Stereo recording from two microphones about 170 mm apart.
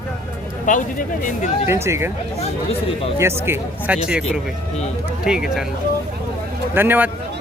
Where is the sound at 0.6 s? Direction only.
50° left (ahead or behind).